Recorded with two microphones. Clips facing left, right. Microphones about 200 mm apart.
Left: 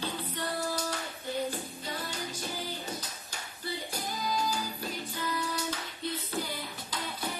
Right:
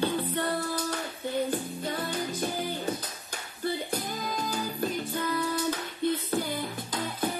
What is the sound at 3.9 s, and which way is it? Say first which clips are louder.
Music: right 2 dB; 55° right (ahead or behind).